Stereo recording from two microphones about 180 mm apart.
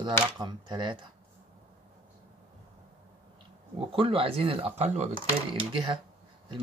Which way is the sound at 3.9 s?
30° right (ahead or behind).